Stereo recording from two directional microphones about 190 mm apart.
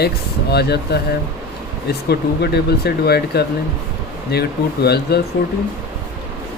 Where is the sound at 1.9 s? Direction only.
60° left (ahead or behind).